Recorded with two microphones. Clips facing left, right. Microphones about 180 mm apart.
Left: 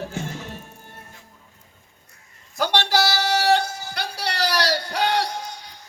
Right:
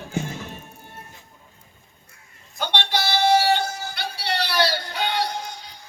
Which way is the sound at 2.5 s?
75° left (ahead or behind).